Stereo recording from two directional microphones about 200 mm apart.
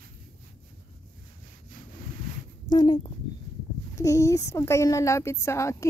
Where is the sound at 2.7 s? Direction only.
25° left (ahead or behind).